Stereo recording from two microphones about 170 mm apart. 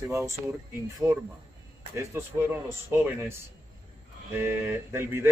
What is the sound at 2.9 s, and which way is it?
Speech, 15° right (ahead or behind).